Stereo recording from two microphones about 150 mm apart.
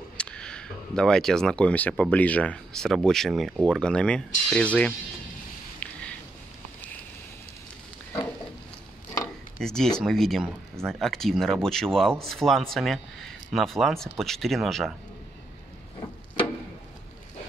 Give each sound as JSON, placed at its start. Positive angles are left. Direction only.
{"t": 0.2, "sound": "speech", "side_deg": 5}
{"t": 5.8, "sound": "a sound", "side_deg": 10}
{"t": 9.6, "sound": "speech", "side_deg": 5}